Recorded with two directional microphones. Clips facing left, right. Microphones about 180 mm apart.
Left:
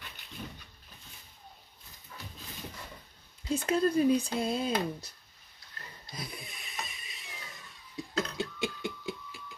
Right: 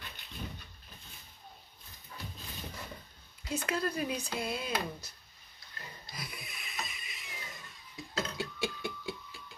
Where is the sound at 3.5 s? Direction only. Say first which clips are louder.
Left 7 dB; 30° left (ahead or behind).